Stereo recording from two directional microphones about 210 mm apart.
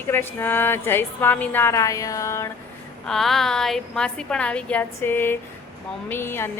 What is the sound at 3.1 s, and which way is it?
A woman's voice, centre (ahead or behind).